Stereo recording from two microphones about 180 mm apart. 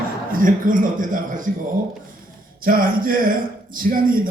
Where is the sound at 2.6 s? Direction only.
50° right (ahead or behind).